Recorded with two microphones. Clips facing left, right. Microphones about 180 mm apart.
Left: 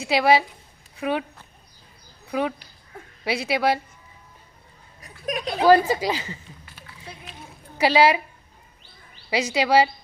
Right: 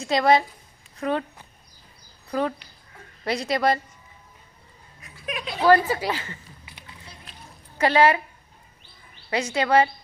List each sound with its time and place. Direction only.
0.0 s speech: 5° left (ahead or behind)
2.2 s speech: 5° left (ahead or behind)
5.2 s a woman's voice: 40° left (ahead or behind)
5.6 s speech: 15° left (ahead or behind)
6.7 s run: 20° right (ahead or behind)
7.8 s speech: 10° left (ahead or behind)
9.3 s speech: 10° left (ahead or behind)